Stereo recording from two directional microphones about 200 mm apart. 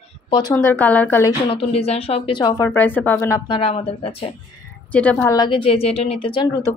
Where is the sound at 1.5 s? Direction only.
30° left (ahead or behind).